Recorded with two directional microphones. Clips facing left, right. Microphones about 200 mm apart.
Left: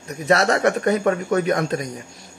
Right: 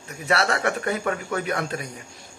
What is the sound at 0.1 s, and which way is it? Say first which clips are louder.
Speech: left 5 dB; 40° left (ahead or behind).